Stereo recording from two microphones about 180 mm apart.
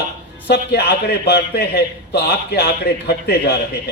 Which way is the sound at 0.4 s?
65° left (ahead or behind).